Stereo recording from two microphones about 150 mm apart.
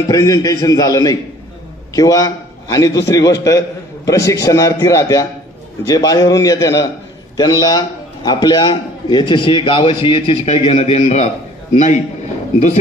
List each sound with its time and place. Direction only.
0.1 s a man's voice: 25° left (ahead or behind); by 12.0 s 50° left (ahead or behind)